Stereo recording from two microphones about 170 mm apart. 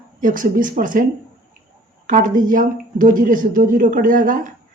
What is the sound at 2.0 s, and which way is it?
Speech, 50° right (ahead or behind).